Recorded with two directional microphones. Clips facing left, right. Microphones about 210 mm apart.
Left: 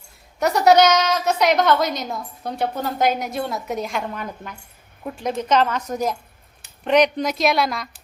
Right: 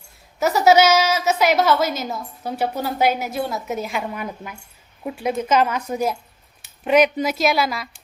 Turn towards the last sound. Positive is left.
turn(degrees=-5)  # may be behind; listen again after turning